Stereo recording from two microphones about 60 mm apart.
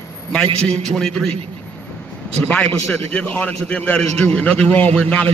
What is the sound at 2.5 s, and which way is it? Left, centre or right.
A man's voice, left.